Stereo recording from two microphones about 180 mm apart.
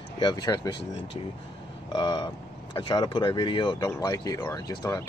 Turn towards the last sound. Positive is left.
turn(degrees=20)  # may be behind; listen again after turning